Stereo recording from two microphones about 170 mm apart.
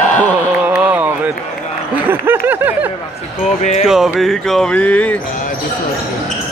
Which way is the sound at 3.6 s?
40° left (ahead or behind).